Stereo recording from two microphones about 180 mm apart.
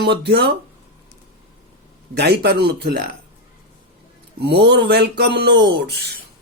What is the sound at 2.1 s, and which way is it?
Speech, 65° right (ahead or behind).